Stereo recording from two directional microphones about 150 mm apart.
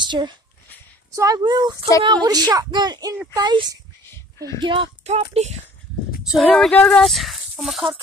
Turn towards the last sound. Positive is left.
turn(degrees=0)  # may be behind; listen again after turning